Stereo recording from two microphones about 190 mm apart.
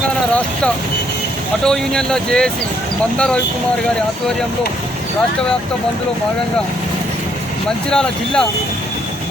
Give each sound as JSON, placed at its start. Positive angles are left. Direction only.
{"t": 1.6, "sound": "speech", "side_deg": 5}
{"t": 7.9, "sound": "speech", "side_deg": 5}